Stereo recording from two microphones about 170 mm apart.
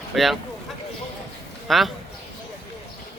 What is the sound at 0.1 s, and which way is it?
Speech, centre (ahead or behind).